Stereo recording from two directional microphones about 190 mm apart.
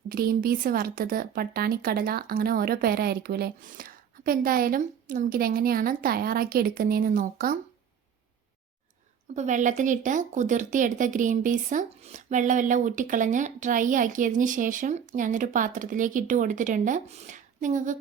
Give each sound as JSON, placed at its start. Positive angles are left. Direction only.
{"t": 0.1, "sound": "speech", "side_deg": -50}
{"t": 9.3, "sound": "speech", "side_deg": -40}